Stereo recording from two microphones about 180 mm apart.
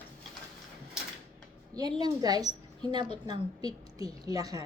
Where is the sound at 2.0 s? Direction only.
20° right (ahead or behind).